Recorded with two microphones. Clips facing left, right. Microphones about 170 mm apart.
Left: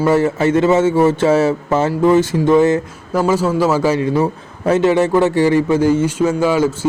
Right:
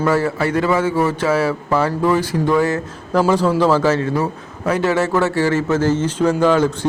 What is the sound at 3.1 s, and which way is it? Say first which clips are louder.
A man's voice: even; 5° left (ahead or behind).